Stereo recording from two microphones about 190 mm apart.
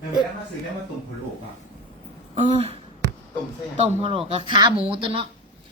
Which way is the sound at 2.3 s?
30° right (ahead or behind).